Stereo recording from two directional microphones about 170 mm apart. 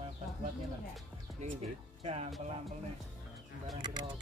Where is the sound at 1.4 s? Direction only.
40° right (ahead or behind).